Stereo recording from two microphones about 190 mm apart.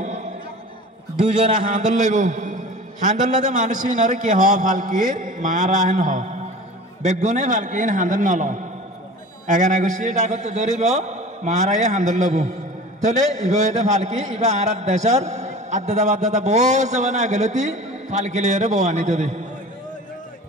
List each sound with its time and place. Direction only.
1.4 s a man's voice: 40° right (ahead or behind)